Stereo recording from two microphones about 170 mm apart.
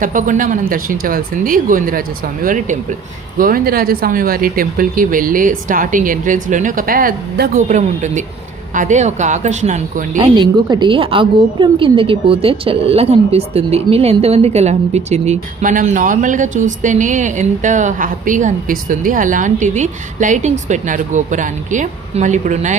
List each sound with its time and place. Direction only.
0.0 s a woman's voice: 50° right (ahead or behind)
10.2 s a woman's voice: 25° right (ahead or behind); by 22.8 s 45° right (ahead or behind)